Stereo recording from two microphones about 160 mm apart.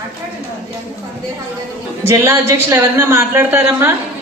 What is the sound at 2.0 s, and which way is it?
A woman's voice, 15° right (ahead or behind).